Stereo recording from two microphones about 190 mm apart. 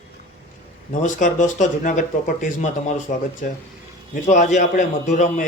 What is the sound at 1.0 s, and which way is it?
A man's voice, 40° left (ahead or behind).